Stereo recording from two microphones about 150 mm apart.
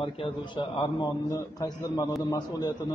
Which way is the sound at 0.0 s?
35° left (ahead or behind).